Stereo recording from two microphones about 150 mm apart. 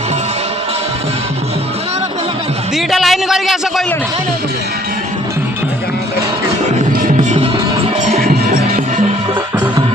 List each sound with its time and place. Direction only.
2.7 s a man's voice: centre (ahead or behind)
8.1 s music: 60° right (ahead or behind)